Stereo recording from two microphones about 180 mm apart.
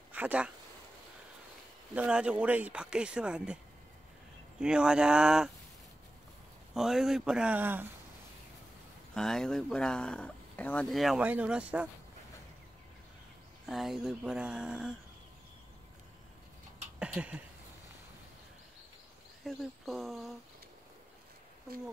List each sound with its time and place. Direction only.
0.1 s speech: 10° right (ahead or behind)
2.0 s speech: 5° right (ahead or behind)
4.6 s speech: 5° right (ahead or behind)
6.7 s speech: centre (ahead or behind)
9.1 s speech: 5° left (ahead or behind)
13.7 s speech: centre (ahead or behind)
17.0 s a sound: 5° right (ahead or behind)
19.4 s speech: centre (ahead or behind)